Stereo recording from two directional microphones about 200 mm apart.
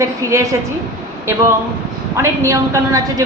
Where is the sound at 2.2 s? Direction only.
15° right (ahead or behind).